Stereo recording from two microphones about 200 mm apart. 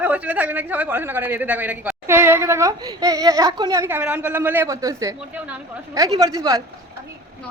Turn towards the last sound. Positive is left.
turn(degrees=-15)  # may be behind; listen again after turning